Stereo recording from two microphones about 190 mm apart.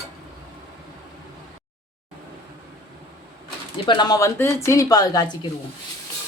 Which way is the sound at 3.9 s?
20° left (ahead or behind).